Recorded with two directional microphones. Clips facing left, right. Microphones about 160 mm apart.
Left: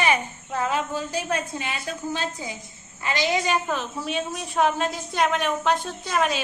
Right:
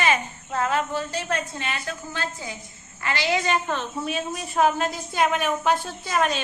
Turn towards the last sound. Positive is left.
turn(degrees=0)  # may be behind; listen again after turning